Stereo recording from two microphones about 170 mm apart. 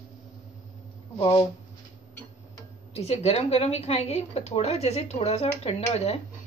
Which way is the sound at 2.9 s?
35° left (ahead or behind).